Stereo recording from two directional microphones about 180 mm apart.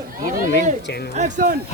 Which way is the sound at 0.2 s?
50° right (ahead or behind).